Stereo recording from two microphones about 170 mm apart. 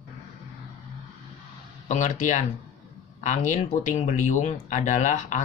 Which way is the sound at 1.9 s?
45° left (ahead or behind).